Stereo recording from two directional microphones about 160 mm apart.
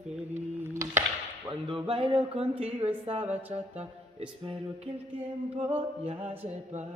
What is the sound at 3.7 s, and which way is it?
Music, 35° right (ahead or behind).